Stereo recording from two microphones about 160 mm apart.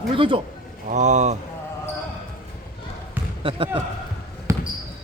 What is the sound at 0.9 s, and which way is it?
Speech, 50° right (ahead or behind).